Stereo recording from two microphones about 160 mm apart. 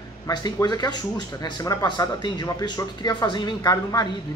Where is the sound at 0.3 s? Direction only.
25° left (ahead or behind).